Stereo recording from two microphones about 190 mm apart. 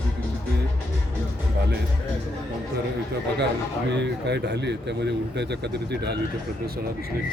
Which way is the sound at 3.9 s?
65° right (ahead or behind).